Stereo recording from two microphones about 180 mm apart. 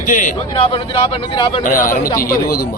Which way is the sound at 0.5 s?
30° left (ahead or behind).